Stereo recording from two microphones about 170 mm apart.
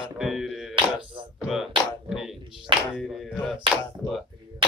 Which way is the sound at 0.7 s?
30° right (ahead or behind).